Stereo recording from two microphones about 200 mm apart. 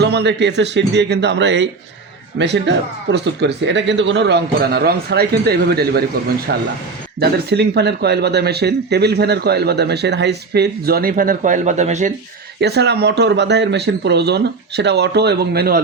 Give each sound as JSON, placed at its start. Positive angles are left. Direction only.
{"t": 0.0, "sound": "speech", "side_deg": -55}
{"t": 12.5, "sound": "speech", "side_deg": -55}